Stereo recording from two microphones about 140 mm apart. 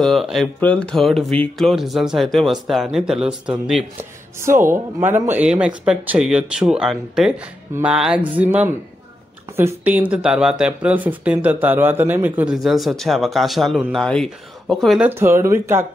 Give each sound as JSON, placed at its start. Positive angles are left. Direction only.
{"t": 0.0, "sound": "speech", "side_deg": 0}
{"t": 4.0, "sound": "speech", "side_deg": -15}
{"t": 12.5, "sound": "speech", "side_deg": 0}
{"t": 15.0, "sound": "speech", "side_deg": -15}